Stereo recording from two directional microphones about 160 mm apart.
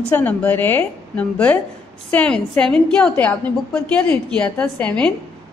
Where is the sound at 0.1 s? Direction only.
10° left (ahead or behind).